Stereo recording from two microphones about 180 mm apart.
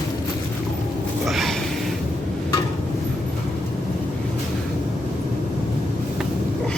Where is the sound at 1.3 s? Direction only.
Centre (ahead or behind).